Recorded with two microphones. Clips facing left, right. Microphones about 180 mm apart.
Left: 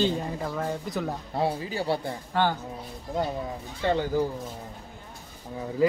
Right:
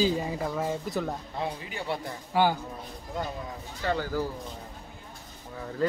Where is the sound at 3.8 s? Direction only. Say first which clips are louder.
Left 4 dB; 20° left (ahead or behind).